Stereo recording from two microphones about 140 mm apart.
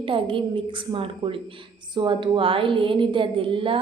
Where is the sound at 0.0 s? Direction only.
35° right (ahead or behind).